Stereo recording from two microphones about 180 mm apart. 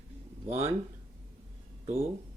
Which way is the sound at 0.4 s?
35° right (ahead or behind).